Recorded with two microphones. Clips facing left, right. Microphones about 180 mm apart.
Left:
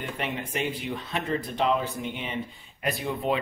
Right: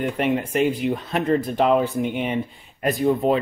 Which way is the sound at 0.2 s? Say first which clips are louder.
Right 10 dB; 55° right (ahead or behind).